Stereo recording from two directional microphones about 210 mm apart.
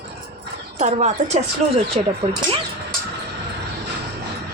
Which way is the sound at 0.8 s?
35° right (ahead or behind).